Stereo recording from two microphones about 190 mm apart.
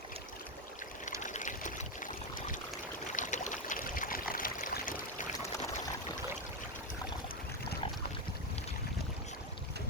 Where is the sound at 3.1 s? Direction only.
40° left (ahead or behind).